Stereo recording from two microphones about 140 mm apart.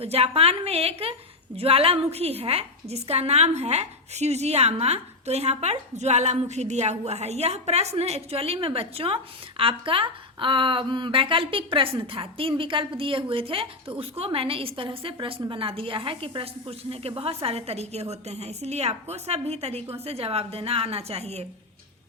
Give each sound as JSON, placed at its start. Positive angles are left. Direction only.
{"t": 0.0, "sound": "a woman's voice", "side_deg": -45}